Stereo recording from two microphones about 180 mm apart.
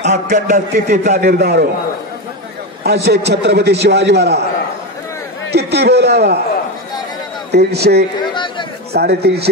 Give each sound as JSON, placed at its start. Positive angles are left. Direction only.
{"t": 0.0, "sound": "a sound", "side_deg": -40}
{"t": 1.1, "sound": "a man's voice", "side_deg": -65}
{"t": 2.8, "sound": "a man's voice", "side_deg": -65}
{"t": 5.5, "sound": "a man's voice", "side_deg": -65}
{"t": 7.5, "sound": "a man's voice", "side_deg": -65}
{"t": 8.2, "sound": "chatter", "side_deg": 25}
{"t": 8.9, "sound": "a man's voice", "side_deg": -65}